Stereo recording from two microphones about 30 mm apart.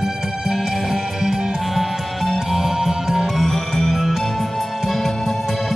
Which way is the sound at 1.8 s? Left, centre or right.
Centre.